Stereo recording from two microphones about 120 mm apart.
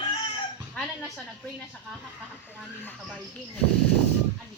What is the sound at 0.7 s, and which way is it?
Speech, 5° left (ahead or behind).